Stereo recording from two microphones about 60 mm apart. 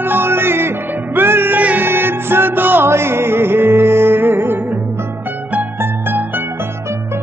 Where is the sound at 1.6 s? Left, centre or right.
Right.